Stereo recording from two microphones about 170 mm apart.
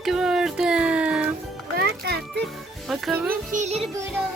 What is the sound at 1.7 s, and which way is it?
Music, 75° right (ahead or behind).